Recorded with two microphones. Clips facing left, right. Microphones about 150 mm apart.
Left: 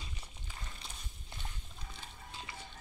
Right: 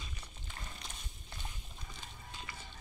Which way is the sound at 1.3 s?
25° left (ahead or behind).